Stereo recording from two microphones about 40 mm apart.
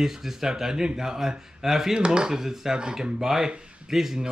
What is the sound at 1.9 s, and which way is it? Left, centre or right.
Speech, right.